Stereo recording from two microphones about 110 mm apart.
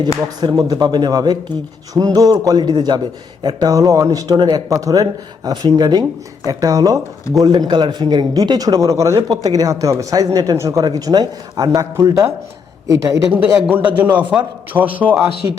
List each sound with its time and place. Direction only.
0.4 s speech: 35° right (ahead or behind)
13.3 s a man's voice: 15° right (ahead or behind)
15.4 s speech: 25° right (ahead or behind)